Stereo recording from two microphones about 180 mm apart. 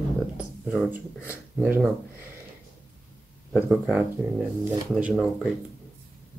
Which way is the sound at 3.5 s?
5° right (ahead or behind).